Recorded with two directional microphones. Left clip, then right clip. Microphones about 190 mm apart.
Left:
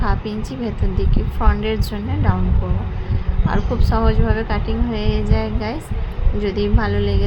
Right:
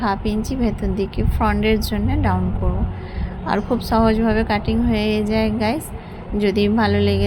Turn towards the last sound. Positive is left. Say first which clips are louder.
# right 3 dB
turn(degrees=-15)  # may be behind; listen again after turning